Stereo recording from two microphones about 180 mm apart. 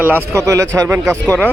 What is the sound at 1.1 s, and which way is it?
Speech, 5° left (ahead or behind).